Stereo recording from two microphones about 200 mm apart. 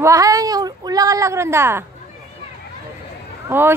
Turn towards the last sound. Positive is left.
turn(degrees=-10)  # may be behind; listen again after turning